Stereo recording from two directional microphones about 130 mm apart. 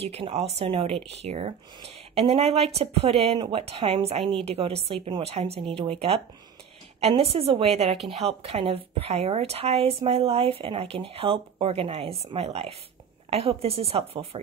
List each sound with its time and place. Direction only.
0.0 s a woman's voice: 50° right (ahead or behind)